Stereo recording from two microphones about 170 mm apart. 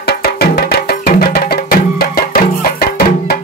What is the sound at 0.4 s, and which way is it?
Music, 65° left (ahead or behind).